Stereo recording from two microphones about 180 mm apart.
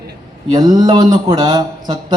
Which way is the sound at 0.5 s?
20° right (ahead or behind).